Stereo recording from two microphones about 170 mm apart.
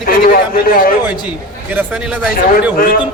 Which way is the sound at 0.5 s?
55° left (ahead or behind).